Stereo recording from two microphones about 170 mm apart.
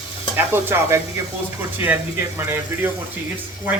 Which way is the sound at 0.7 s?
15° right (ahead or behind).